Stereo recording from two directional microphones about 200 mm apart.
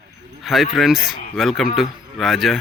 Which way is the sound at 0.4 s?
Centre (ahead or behind).